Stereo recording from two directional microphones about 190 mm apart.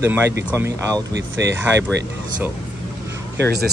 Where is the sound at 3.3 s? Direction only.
60° right (ahead or behind).